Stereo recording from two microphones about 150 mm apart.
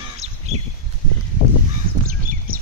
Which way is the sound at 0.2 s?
45° right (ahead or behind).